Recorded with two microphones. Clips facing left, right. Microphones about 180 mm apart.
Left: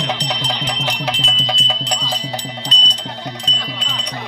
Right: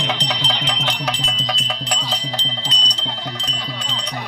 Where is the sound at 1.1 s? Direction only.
25° left (ahead or behind).